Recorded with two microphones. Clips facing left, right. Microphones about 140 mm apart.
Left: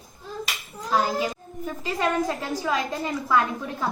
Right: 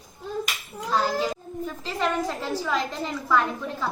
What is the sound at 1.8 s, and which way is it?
A woman's voice, 15° left (ahead or behind).